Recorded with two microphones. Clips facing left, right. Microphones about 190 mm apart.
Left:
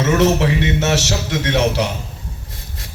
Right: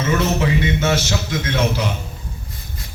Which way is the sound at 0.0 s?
75° left (ahead or behind).